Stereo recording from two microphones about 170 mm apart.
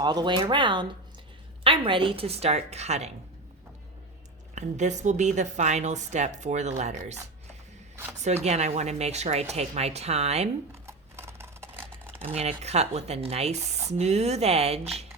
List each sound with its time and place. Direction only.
0.0 s speech: 25° right (ahead or behind); by 3.1 s 40° right (ahead or behind)
4.5 s speech: 45° right (ahead or behind)
8.2 s speech: 40° right (ahead or behind)
10.8 s a sound: 15° right (ahead or behind)
12.3 s speech: 40° right (ahead or behind)